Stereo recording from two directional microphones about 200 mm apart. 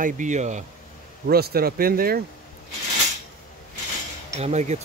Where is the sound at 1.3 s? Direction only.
50° right (ahead or behind).